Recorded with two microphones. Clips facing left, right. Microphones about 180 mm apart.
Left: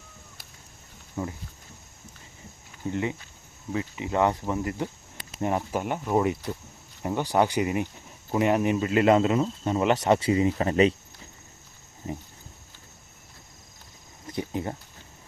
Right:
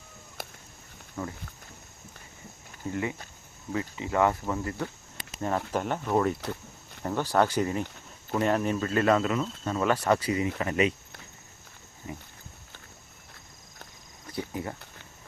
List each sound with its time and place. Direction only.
1.2 s speech: 15° left (ahead or behind)
2.9 s speech: 20° left (ahead or behind)
14.3 s cricket: 25° left (ahead or behind)